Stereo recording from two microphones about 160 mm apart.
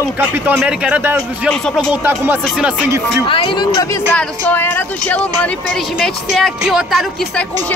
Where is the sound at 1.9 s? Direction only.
10° right (ahead or behind).